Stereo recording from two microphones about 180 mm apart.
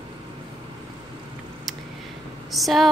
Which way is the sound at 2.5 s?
Centre (ahead or behind).